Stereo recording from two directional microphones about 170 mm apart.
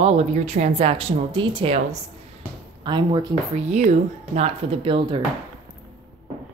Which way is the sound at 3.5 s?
45° right (ahead or behind).